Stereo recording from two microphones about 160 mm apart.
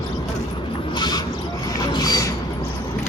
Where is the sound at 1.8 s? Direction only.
25° left (ahead or behind).